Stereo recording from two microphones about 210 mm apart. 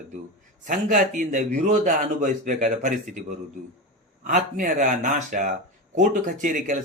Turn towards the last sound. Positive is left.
turn(degrees=-40)  # may be behind; listen again after turning